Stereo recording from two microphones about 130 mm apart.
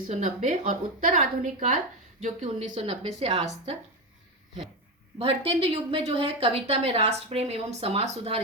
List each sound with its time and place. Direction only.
0.1 s a woman's voice: 70° right (ahead or behind)
2.7 s a woman's voice: 45° right (ahead or behind)
5.2 s a woman's voice: 45° right (ahead or behind)